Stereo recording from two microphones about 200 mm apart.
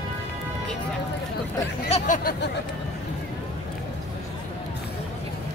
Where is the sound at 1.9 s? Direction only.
35° left (ahead or behind).